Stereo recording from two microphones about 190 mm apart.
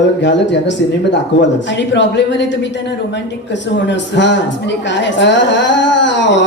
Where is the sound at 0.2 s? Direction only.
70° left (ahead or behind).